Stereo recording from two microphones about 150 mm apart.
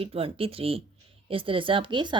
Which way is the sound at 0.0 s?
40° right (ahead or behind).